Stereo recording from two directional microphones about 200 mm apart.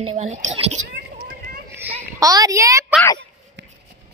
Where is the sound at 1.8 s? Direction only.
15° right (ahead or behind).